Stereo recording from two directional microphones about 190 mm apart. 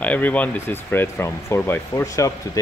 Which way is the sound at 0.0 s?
10° left (ahead or behind).